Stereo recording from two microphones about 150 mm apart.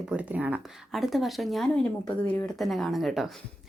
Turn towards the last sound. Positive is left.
turn(degrees=0)  # may be behind; listen again after turning